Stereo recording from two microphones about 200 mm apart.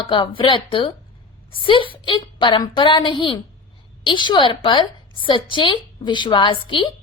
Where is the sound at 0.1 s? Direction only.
25° left (ahead or behind).